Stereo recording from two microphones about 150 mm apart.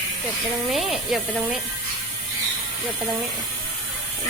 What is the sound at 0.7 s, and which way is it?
Speech, centre (ahead or behind).